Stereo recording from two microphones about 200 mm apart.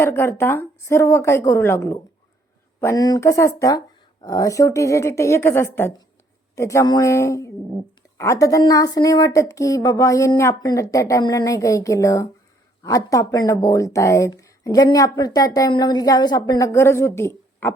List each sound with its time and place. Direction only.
0.0 s speech: 15° left (ahead or behind)